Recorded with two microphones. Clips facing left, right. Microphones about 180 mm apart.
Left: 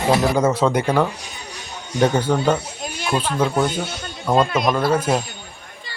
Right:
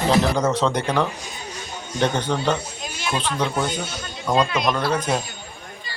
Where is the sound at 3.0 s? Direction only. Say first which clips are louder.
Left 3 dB; 45° left (ahead or behind).